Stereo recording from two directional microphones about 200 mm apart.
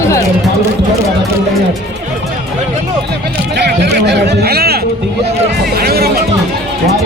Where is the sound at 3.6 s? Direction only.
55° right (ahead or behind).